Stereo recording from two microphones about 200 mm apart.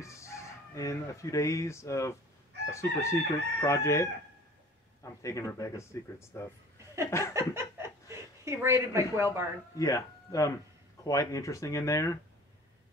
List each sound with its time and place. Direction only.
0.0 s speech: 15° left (ahead or behind)
7.3 s speech: 15° right (ahead or behind)
9.8 s speech: 15° left (ahead or behind)